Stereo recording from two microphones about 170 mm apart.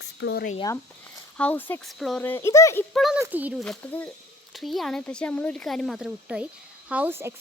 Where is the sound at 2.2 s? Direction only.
15° left (ahead or behind).